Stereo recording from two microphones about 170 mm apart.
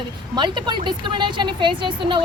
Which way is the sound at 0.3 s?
25° right (ahead or behind).